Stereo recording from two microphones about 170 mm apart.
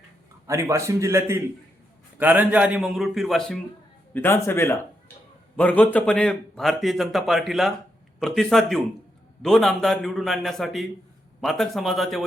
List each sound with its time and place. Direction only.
0.4 s a man's voice: 15° right (ahead or behind); by 3.6 s centre (ahead or behind)
4.1 s a man's voice: 15° left (ahead or behind)